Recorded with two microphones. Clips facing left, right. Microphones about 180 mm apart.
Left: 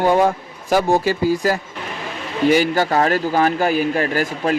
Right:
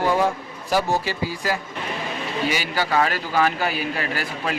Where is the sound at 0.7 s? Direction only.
50° left (ahead or behind).